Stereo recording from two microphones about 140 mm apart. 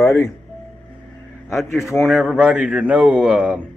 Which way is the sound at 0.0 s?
20° left (ahead or behind).